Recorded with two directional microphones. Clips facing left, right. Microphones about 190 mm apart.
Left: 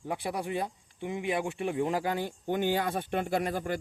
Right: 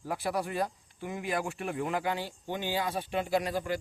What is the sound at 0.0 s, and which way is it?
Speech, 20° left (ahead or behind).